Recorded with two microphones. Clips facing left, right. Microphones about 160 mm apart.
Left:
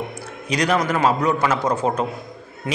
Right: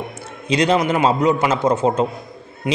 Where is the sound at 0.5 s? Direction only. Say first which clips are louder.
Right 3 dB; 25° right (ahead or behind).